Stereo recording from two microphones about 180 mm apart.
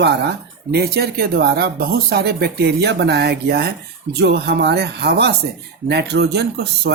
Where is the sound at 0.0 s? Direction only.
65° right (ahead or behind).